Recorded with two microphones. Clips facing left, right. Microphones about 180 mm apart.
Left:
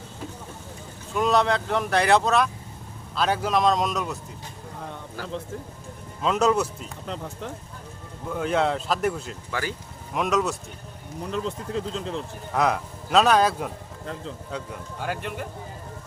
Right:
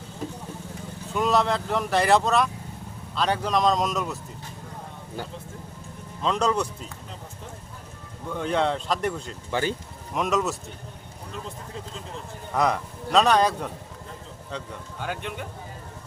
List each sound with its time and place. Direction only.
1.1 s speech: centre (ahead or behind)
6.2 s speech: 5° left (ahead or behind)
8.3 s speech: 5° left (ahead or behind)
9.5 s speech: 25° right (ahead or behind)
10.2 s speech: centre (ahead or behind)
11.3 s speech: 90° left
12.5 s speech: 5° left (ahead or behind)